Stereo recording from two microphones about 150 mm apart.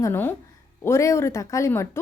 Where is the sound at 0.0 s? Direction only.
15° left (ahead or behind).